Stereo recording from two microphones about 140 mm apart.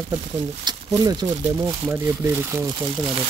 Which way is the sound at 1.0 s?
25° right (ahead or behind).